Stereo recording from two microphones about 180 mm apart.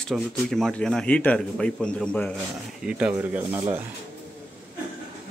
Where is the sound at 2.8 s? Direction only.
5° right (ahead or behind).